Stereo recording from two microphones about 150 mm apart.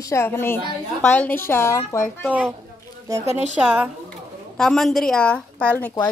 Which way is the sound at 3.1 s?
20° right (ahead or behind).